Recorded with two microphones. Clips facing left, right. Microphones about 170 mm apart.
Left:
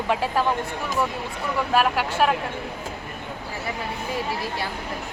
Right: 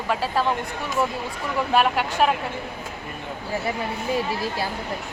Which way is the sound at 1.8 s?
Centre (ahead or behind).